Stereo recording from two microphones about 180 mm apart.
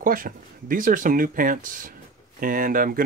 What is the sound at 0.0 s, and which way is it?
Speech, 50° right (ahead or behind).